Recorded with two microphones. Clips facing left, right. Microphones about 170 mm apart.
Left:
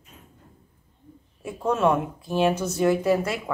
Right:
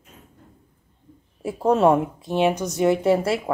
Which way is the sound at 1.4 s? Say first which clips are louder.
Right 5 dB; 30° right (ahead or behind).